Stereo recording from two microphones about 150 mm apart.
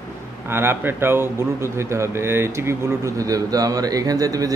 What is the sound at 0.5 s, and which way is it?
A man's voice, 15° right (ahead or behind).